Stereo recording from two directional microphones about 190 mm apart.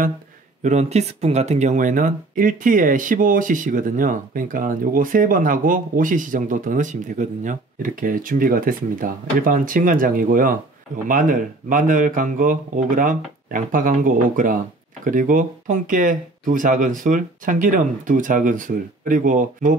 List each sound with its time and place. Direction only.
0.6 s speech: 40° right (ahead or behind)